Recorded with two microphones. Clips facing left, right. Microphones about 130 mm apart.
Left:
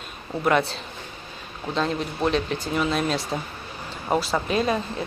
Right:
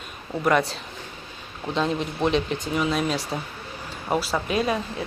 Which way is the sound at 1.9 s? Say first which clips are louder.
Even; 5° left (ahead or behind).